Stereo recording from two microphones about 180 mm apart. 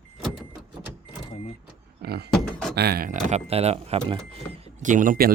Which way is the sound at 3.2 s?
35° right (ahead or behind).